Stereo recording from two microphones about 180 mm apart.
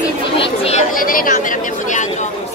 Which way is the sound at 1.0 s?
50° left (ahead or behind).